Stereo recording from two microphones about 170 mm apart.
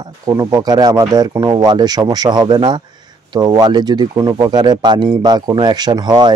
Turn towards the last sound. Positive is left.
turn(degrees=-25)  # may be behind; listen again after turning